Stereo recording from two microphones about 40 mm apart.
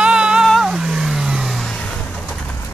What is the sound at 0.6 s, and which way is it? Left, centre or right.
Vehicle, centre.